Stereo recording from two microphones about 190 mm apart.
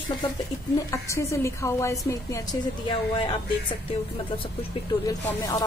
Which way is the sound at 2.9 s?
25° left (ahead or behind).